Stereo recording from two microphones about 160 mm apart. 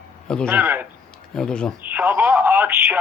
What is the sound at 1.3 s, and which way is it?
Speech, 5° left (ahead or behind).